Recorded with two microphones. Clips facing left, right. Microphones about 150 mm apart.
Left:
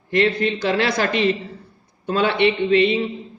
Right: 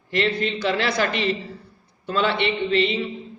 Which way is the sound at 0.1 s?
55° left (ahead or behind).